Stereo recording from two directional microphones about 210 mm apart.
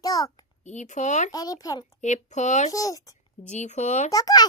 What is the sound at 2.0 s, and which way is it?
Speech, 35° left (ahead or behind).